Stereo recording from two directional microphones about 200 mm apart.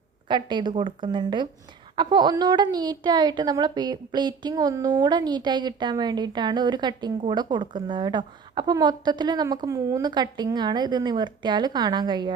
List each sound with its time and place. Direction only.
0.3 s a woman's voice: 25° right (ahead or behind)